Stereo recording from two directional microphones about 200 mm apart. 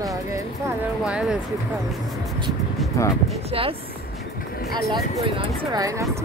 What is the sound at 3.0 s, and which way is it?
Speech, 15° left (ahead or behind).